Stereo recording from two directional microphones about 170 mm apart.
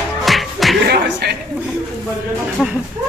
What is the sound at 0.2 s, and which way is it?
Music, centre (ahead or behind).